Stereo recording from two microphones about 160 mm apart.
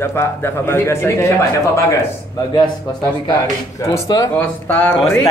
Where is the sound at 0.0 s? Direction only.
15° left (ahead or behind).